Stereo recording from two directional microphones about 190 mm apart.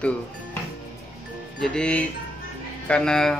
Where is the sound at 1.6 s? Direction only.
5° left (ahead or behind).